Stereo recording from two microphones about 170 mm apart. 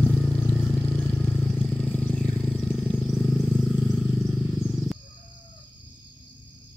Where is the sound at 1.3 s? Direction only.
Centre (ahead or behind).